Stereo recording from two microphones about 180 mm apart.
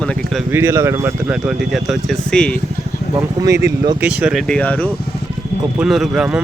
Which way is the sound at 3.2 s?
20° right (ahead or behind).